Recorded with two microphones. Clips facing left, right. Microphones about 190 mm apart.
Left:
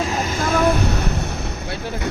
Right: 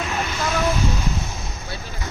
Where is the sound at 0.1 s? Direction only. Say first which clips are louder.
Left 4 dB; 50° left (ahead or behind); by 1.1 s 65° left (ahead or behind).